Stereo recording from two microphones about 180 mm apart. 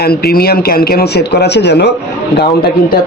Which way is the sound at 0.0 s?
60° left (ahead or behind).